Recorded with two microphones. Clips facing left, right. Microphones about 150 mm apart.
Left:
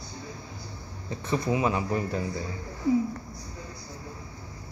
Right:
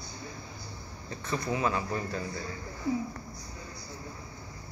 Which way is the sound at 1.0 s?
25° left (ahead or behind).